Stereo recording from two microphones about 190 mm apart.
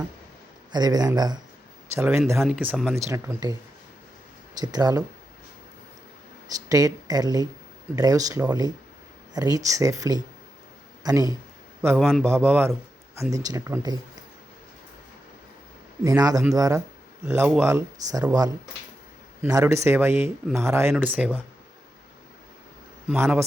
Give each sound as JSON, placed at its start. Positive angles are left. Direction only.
{"t": 0.7, "sound": "speech", "side_deg": -20}
{"t": 2.0, "sound": "speech", "side_deg": -5}
{"t": 4.6, "sound": "speech", "side_deg": -20}
{"t": 6.7, "sound": "speech", "side_deg": -20}
{"t": 11.9, "sound": "speech", "side_deg": 0}
{"t": 12.2, "sound": "speech", "side_deg": -10}
{"t": 16.0, "sound": "speech", "side_deg": -20}
{"t": 19.4, "sound": "speech", "side_deg": -15}
{"t": 23.0, "sound": "speech", "side_deg": -10}